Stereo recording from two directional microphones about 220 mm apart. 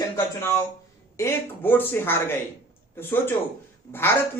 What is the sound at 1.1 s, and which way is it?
Speech, 10° left (ahead or behind).